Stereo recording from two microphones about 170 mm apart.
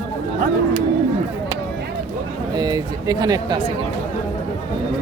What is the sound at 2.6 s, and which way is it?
Speech, 25° right (ahead or behind).